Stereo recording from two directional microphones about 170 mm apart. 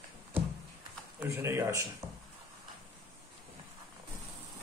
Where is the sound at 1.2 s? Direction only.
15° right (ahead or behind).